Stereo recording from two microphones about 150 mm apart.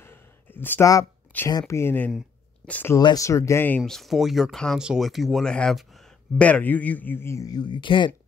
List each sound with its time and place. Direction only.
0.0 s a sound: 15° left (ahead or behind)
1.5 s speech: 20° left (ahead or behind)
3.0 s speech: 25° left (ahead or behind)